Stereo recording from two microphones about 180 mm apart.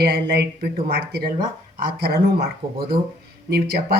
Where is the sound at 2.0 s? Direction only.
60° right (ahead or behind).